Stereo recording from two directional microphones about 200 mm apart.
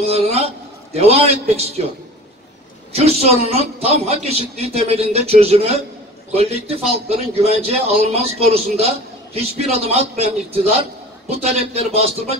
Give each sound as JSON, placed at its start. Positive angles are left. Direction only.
{"t": 0.0, "sound": "a sound", "side_deg": -30}
{"t": 0.9, "sound": "a man's voice", "side_deg": -30}
{"t": 2.9, "sound": "a man's voice", "side_deg": -30}